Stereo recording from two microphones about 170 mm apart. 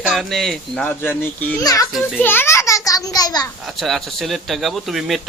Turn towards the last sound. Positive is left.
turn(degrees=0)  # may be behind; listen again after turning